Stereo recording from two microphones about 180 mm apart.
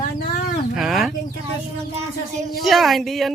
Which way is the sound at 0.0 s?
50° left (ahead or behind).